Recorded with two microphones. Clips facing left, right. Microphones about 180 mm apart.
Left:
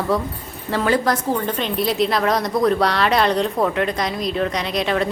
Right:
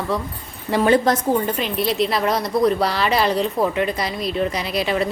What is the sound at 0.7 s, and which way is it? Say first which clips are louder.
Speech: right 3 dB; 20° right (ahead or behind).